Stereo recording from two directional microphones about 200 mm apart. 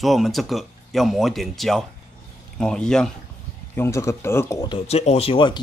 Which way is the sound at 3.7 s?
15° left (ahead or behind).